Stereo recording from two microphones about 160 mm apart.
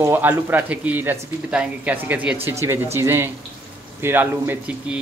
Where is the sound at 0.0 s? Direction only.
15° right (ahead or behind).